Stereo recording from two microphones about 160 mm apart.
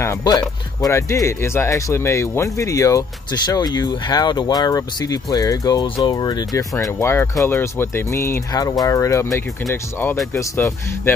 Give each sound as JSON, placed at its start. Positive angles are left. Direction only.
{"t": 0.0, "sound": "speech", "side_deg": 20}